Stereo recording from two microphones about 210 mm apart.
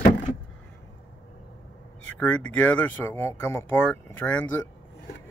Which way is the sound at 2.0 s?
5° left (ahead or behind).